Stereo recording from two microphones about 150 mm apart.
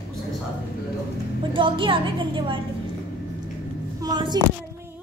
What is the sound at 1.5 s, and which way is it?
A woman's voice, 35° right (ahead or behind).